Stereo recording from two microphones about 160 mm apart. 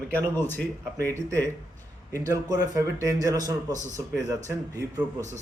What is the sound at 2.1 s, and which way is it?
A man's voice, 20° right (ahead or behind).